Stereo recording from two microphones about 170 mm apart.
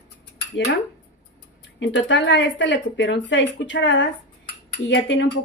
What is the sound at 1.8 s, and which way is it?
Speech, 90° left.